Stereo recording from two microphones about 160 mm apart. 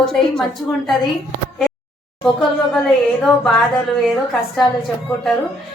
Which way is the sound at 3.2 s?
Centre (ahead or behind).